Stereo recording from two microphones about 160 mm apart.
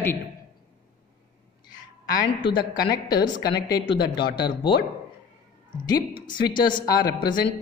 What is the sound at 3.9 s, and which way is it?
Speech, 90° left.